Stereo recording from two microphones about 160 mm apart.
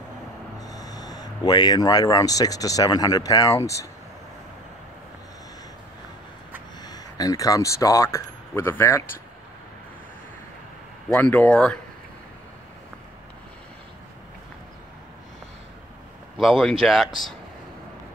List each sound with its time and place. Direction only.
0.6 s speech: 25° left (ahead or behind)
6.8 s speech: 25° left (ahead or behind)
11.1 s speech: 10° left (ahead or behind)
16.3 s speech: centre (ahead or behind)